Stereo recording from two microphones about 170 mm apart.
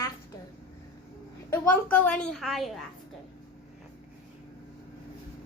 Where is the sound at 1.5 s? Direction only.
10° left (ahead or behind).